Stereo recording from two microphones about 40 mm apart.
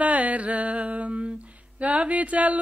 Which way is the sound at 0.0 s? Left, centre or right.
Right.